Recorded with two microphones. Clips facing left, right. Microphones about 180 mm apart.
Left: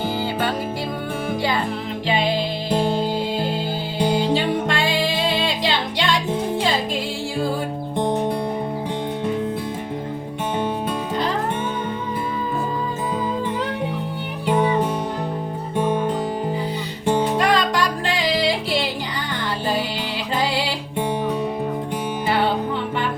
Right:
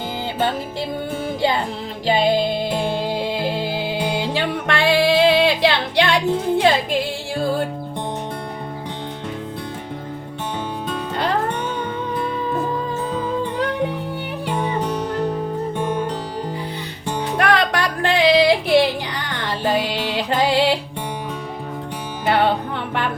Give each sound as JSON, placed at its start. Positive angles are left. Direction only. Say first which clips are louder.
{"t": 2.0, "sound": "music", "louder": "right 4 dB", "side_deg": -40}
{"t": 4.7, "sound": "music", "louder": "right 5 dB", "side_deg": -65}
{"t": 17.3, "sound": "music", "louder": "right 1 dB", "side_deg": -65}